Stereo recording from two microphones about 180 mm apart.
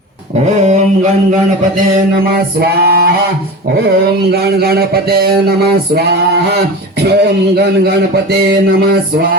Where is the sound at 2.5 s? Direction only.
60° right (ahead or behind).